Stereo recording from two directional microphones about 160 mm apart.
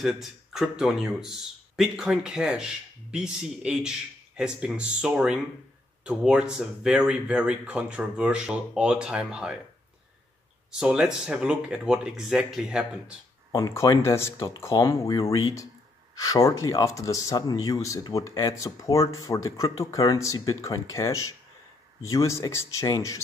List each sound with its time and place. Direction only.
0.0 s speech: centre (ahead or behind)
10.7 s speech: 5° right (ahead or behind)
13.5 s speech: 20° left (ahead or behind)